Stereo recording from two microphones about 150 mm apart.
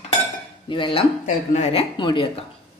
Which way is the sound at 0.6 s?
35° left (ahead or behind).